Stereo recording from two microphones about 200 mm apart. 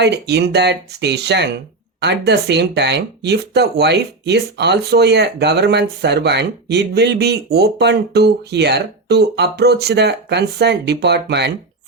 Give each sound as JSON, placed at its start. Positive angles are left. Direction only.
{"t": 0.0, "sound": "speech", "side_deg": -55}